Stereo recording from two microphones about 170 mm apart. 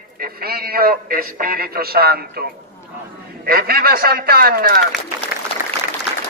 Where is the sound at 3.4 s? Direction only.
60° right (ahead or behind).